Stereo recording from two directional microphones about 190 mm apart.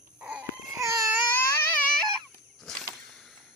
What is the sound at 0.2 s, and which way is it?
Baby cry, 5° right (ahead or behind).